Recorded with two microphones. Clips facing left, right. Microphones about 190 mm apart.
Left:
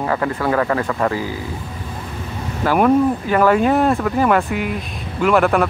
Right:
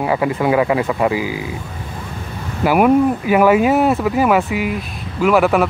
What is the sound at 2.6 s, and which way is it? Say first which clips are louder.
Speech: right 2 dB; 10° right (ahead or behind).